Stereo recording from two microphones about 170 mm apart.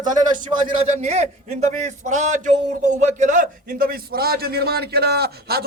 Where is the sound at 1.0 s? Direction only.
40° right (ahead or behind).